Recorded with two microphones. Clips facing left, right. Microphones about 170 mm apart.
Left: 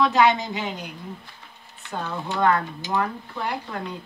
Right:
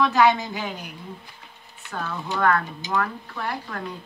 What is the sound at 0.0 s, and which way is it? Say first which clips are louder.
A woman's voice: even; 20° left (ahead or behind).